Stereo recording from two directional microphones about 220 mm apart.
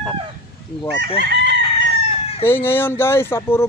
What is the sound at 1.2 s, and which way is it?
Chicken, 50° right (ahead or behind).